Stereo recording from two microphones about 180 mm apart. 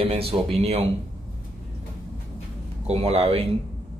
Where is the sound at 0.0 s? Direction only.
35° right (ahead or behind).